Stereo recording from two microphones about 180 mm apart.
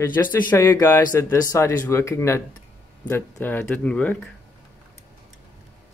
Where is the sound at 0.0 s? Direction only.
10° left (ahead or behind).